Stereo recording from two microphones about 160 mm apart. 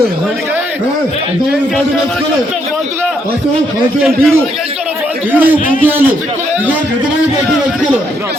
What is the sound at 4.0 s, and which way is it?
Speech, centre (ahead or behind).